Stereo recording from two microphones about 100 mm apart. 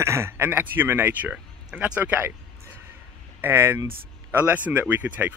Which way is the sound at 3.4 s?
25° right (ahead or behind).